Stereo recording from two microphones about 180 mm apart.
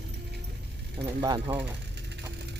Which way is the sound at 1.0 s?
20° right (ahead or behind).